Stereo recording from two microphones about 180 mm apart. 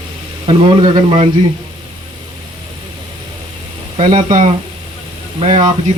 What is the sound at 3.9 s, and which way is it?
Speech, 35° right (ahead or behind).